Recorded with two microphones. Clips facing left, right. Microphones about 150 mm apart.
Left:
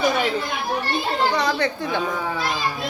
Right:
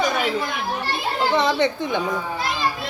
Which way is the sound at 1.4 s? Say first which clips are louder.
Right 2 dB; 20° right (ahead or behind).